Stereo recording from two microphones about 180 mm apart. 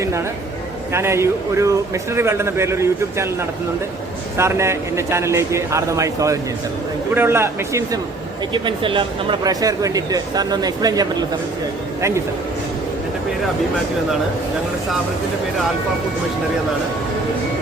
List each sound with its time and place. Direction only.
0.9 s a man's voice: 15° right (ahead or behind)
4.4 s a man's voice: 15° right (ahead or behind)
8.5 s speech: 25° right (ahead or behind)